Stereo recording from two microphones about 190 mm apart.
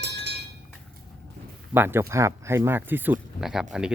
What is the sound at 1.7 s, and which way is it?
Speech, 10° right (ahead or behind).